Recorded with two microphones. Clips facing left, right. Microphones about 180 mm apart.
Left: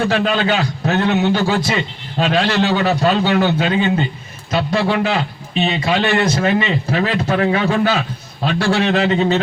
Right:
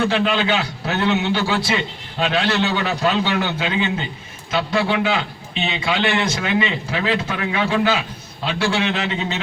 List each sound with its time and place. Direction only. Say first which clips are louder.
0.1 s a man's voice: left 2 dB; 40° left (ahead or behind)